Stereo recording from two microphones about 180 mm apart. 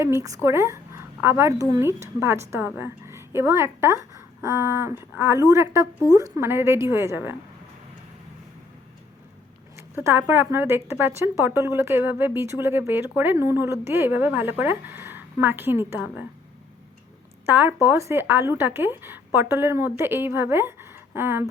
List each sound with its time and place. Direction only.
0.0 s speech: 20° right (ahead or behind)
9.7 s speech: 15° right (ahead or behind)
17.4 s speech: 10° right (ahead or behind)